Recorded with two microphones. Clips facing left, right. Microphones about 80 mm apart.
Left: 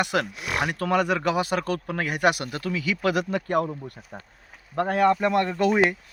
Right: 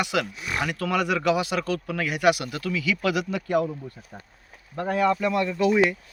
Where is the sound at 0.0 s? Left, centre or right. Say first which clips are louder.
Left 1 dB; left.